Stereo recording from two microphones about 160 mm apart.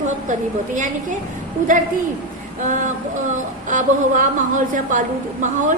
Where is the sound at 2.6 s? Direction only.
55° right (ahead or behind).